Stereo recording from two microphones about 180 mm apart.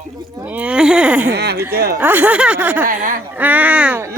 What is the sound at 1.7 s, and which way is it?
Speech, 60° right (ahead or behind).